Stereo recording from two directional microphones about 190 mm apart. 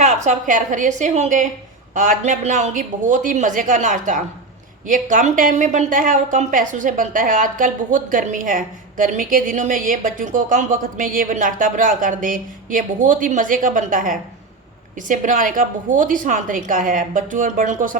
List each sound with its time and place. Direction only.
0.0 s a woman's voice: 40° right (ahead or behind)